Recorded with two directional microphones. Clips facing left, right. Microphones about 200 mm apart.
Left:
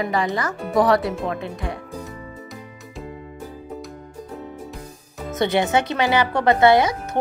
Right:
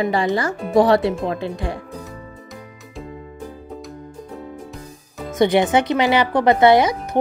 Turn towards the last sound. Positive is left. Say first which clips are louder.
# right 2 dB
turn(degrees=-20)  # may be behind; listen again after turning